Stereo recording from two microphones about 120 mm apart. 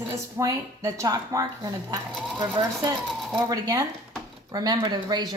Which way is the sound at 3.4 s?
30° right (ahead or behind).